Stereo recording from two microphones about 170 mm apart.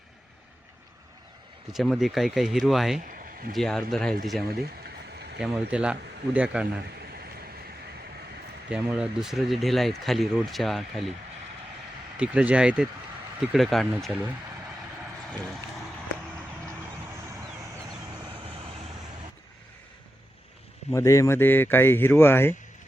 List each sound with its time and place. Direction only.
1.7 s speech: centre (ahead or behind)
3.0 s a sound: 55° right (ahead or behind)
3.5 s speech: 5° left (ahead or behind)
4.4 s a sound: 65° right (ahead or behind)
5.4 s speech: 5° right (ahead or behind)
8.7 s speech: 5° right (ahead or behind)
12.1 s speech: 5° right (ahead or behind)
20.9 s speech: 20° left (ahead or behind)